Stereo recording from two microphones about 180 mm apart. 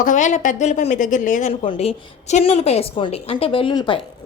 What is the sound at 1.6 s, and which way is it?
A woman's voice, 30° left (ahead or behind).